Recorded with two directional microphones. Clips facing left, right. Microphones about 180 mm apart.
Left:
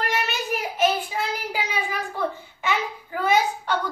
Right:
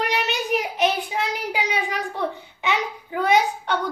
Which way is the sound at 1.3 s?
20° right (ahead or behind).